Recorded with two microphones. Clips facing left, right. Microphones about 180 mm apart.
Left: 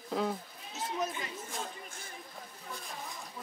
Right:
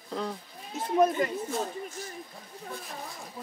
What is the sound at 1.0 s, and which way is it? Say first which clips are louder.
Speech: right 15 dB; 55° right (ahead or behind).